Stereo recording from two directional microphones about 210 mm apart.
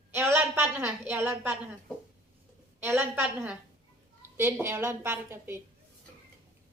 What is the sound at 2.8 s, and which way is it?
A woman's voice, 10° right (ahead or behind).